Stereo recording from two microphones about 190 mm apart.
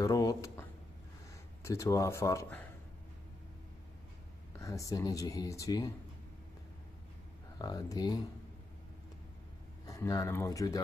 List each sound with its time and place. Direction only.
0.0 s a sound: 20° left (ahead or behind)
1.6 s speech: 15° left (ahead or behind)
4.6 s speech: 15° left (ahead or behind)
7.5 s speech: 20° left (ahead or behind)
9.8 s speech: 15° left (ahead or behind)